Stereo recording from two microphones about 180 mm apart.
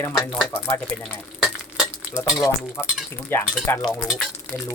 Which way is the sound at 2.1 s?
15° left (ahead or behind).